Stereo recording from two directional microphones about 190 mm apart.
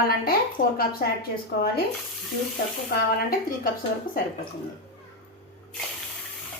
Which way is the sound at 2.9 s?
50° left (ahead or behind).